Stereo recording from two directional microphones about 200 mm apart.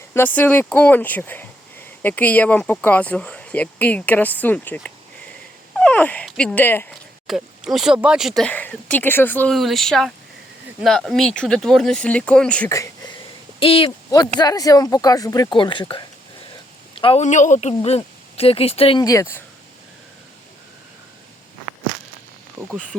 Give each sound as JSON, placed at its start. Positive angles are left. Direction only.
{"t": 0.1, "sound": "speech", "side_deg": 10}
{"t": 7.3, "sound": "speech", "side_deg": 0}
{"t": 13.6, "sound": "speech", "side_deg": 25}